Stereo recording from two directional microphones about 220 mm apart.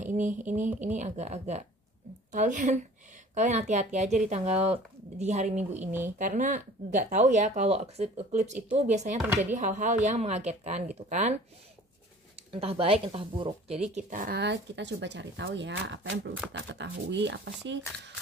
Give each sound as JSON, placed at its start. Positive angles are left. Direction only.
{"t": 0.0, "sound": "music", "side_deg": -35}
{"t": 0.9, "sound": "speech", "side_deg": -30}
{"t": 12.5, "sound": "speech", "side_deg": -25}
{"t": 13.9, "sound": "speech", "side_deg": -40}